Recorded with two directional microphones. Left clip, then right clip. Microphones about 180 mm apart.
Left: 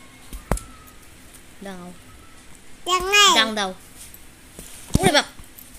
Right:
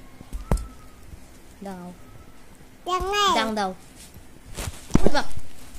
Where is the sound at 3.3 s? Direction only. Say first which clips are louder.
Left 4 dB; 35° left (ahead or behind).